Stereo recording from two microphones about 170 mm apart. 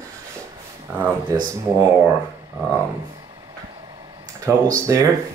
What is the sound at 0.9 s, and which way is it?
Speech, 15° right (ahead or behind).